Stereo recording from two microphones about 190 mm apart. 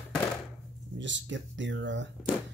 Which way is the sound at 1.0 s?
75° right (ahead or behind).